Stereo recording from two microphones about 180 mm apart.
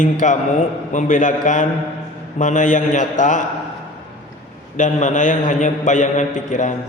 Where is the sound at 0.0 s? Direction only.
45° left (ahead or behind).